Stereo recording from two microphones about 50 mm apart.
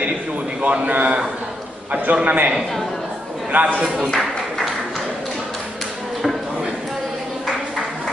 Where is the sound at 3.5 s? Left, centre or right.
Right.